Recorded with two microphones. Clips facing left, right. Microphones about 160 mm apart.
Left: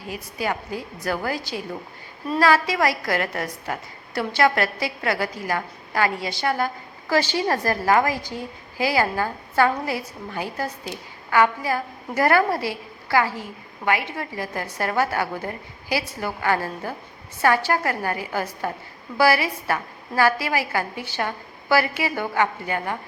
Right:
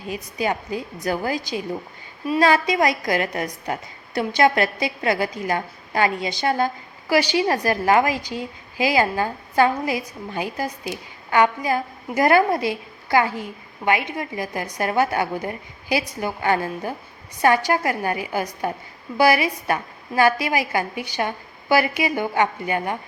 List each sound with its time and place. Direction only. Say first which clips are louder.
0.0 s a woman's voice: right 3 dB; 20° right (ahead or behind)